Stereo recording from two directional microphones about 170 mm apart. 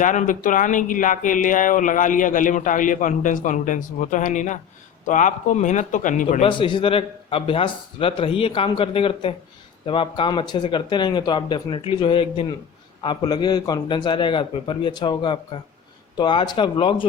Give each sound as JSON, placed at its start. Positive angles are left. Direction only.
{"t": 0.0, "sound": "speech", "side_deg": 50}
{"t": 6.4, "sound": "a man's voice", "side_deg": 30}